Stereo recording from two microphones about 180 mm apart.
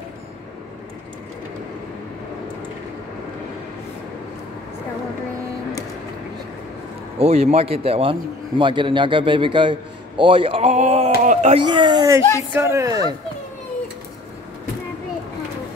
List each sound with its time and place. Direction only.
7.2 s a man's voice: 35° right (ahead or behind)
11.6 s a man's voice: 25° right (ahead or behind)